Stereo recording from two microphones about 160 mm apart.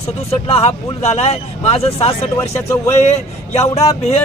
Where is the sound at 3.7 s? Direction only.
40° left (ahead or behind).